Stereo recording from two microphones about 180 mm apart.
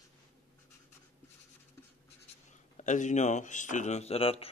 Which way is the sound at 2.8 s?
40° left (ahead or behind).